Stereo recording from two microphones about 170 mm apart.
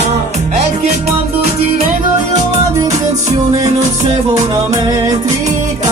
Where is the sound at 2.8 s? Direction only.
40° right (ahead or behind).